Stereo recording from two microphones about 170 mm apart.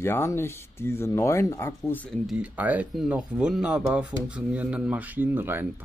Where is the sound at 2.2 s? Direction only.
5° right (ahead or behind).